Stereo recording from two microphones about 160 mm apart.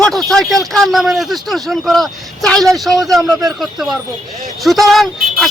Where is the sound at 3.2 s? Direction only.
20° right (ahead or behind).